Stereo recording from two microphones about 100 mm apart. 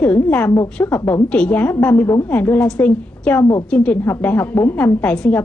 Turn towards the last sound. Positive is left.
turn(degrees=15)  # may be behind; listen again after turning